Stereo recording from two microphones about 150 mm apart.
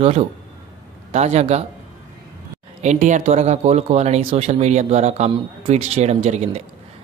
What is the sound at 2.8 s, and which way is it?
A man's voice, 55° right (ahead or behind).